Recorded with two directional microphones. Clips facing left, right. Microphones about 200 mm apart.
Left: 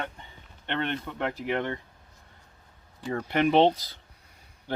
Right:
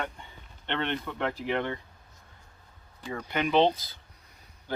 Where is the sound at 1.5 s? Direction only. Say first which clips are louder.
Left 1 dB; 15° left (ahead or behind).